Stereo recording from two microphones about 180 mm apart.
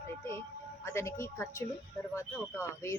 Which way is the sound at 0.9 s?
15° left (ahead or behind).